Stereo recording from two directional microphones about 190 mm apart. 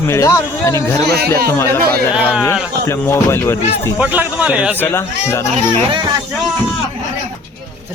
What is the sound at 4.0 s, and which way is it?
Speech, 10° right (ahead or behind).